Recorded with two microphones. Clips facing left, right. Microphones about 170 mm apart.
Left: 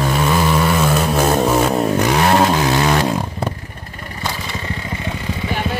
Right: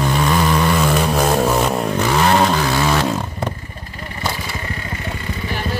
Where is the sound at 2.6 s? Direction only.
20° left (ahead or behind).